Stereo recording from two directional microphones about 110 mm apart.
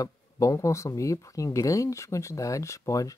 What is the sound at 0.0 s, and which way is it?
Speech, 30° left (ahead or behind).